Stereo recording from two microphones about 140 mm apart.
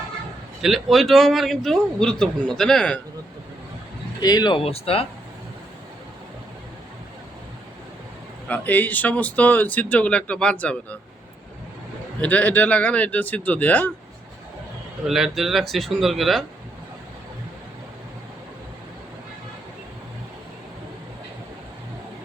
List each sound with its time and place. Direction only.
0.6 s a man's voice: centre (ahead or behind)
4.2 s speech: 30° left (ahead or behind); by 5.0 s 45° left (ahead or behind)
8.4 s speech: 10° left (ahead or behind)
12.2 s speech: 10° left (ahead or behind)
15.0 s a man's voice: 5° right (ahead or behind)